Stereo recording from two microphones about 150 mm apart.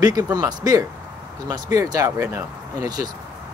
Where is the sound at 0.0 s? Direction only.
25° right (ahead or behind).